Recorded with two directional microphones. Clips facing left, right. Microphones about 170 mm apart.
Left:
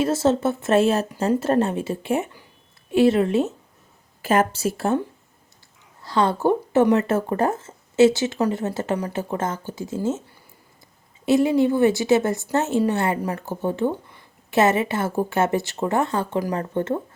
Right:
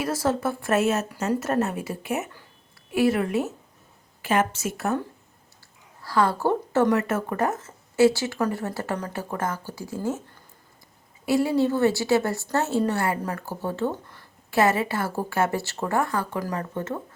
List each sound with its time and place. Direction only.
0.0 s a woman's voice: 25° left (ahead or behind)
4.2 s speech: 40° left (ahead or behind)
6.0 s a woman's voice: 25° left (ahead or behind)
7.1 s a woman's voice: 30° left (ahead or behind)
11.3 s a woman's voice: 20° left (ahead or behind)